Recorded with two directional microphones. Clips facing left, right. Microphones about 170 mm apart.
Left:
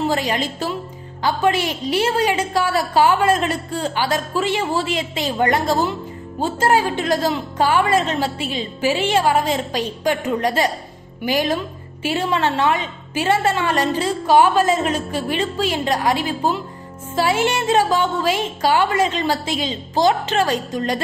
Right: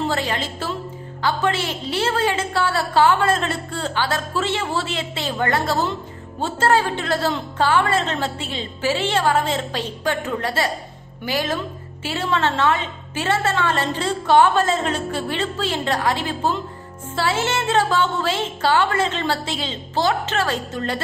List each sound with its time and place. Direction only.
0.1 s a woman's voice: 15° left (ahead or behind)